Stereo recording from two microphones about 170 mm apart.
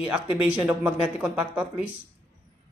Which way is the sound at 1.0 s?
5° right (ahead or behind).